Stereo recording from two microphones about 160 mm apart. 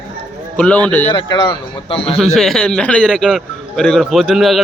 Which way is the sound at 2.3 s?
5° left (ahead or behind).